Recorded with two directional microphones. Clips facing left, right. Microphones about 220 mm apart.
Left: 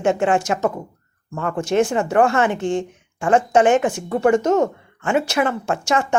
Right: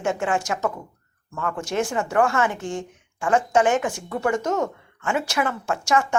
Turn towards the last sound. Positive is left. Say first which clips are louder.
# left 2 dB
turn(degrees=25)  # may be behind; listen again after turning